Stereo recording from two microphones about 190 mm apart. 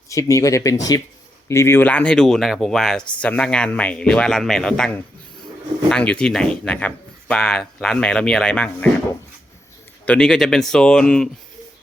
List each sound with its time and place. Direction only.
0.1 s speech: 15° left (ahead or behind)
10.1 s speech: 5° left (ahead or behind)